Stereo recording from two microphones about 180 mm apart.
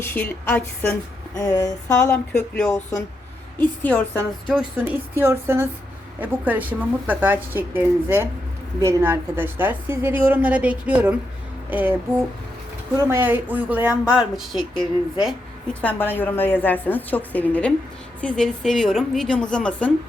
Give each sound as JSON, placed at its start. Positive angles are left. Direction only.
{"t": 0.0, "sound": "a woman's voice", "side_deg": 10}
{"t": 3.8, "sound": "a woman's voice", "side_deg": 10}
{"t": 4.4, "sound": "a woman's voice", "side_deg": -5}
{"t": 13.0, "sound": "a woman's voice", "side_deg": -15}